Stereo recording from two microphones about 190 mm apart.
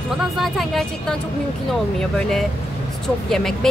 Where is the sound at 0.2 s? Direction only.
Centre (ahead or behind).